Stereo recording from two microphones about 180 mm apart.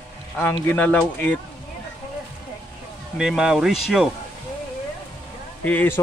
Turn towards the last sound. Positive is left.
turn(degrees=10)  # may be behind; listen again after turning